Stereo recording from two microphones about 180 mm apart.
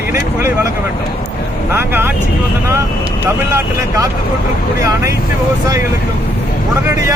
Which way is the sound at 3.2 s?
15° right (ahead or behind).